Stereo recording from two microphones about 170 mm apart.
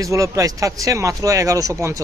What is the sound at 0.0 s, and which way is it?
Speech, 20° right (ahead or behind).